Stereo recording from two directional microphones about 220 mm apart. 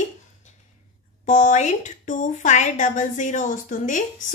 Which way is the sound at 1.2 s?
35° left (ahead or behind).